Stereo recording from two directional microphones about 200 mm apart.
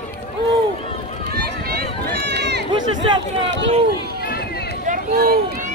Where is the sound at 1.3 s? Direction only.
50° right (ahead or behind).